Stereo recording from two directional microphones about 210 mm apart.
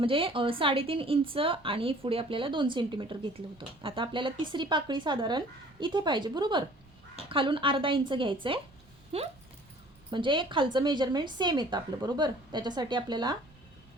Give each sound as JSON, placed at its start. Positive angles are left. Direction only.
{"t": 0.0, "sound": "a woman's voice", "side_deg": -25}